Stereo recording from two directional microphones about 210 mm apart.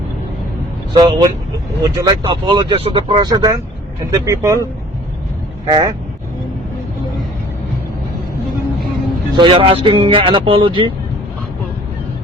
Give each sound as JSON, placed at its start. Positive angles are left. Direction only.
{"t": 0.9, "sound": "speech", "side_deg": -20}
{"t": 5.6, "sound": "speech", "side_deg": -20}
{"t": 9.3, "sound": "speech", "side_deg": -25}